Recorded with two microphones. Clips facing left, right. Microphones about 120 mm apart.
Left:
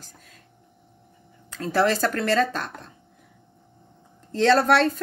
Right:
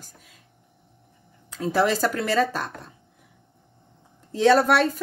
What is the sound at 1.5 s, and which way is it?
Speech, 15° right (ahead or behind).